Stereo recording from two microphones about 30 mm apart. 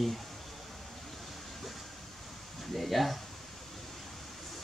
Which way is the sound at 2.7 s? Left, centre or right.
Centre.